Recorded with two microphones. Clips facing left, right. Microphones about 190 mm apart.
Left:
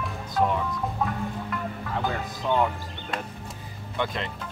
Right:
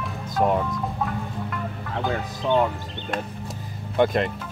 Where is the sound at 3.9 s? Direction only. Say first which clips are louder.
Right 9 dB; 50° right (ahead or behind).